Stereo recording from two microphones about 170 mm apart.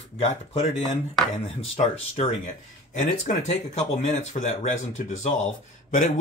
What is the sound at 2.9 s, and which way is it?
Speech, 50° left (ahead or behind).